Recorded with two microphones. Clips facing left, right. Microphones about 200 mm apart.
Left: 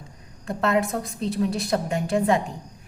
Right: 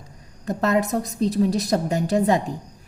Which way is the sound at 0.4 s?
40° right (ahead or behind).